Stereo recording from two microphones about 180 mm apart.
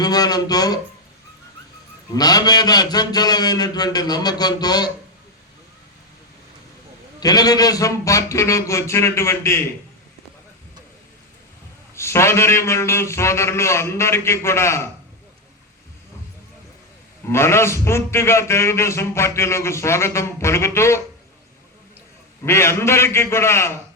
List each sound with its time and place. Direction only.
0.0 s a man's voice: 20° left (ahead or behind)
2.1 s a man's voice: 20° left (ahead or behind)
7.2 s a man's voice: 20° left (ahead or behind)
11.9 s a man's voice: 15° left (ahead or behind)
17.2 s a man's voice: 15° left (ahead or behind)
22.4 s a man's voice: 15° left (ahead or behind)